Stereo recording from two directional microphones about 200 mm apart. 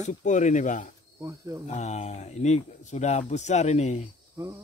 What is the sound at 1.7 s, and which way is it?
Speech, 35° left (ahead or behind).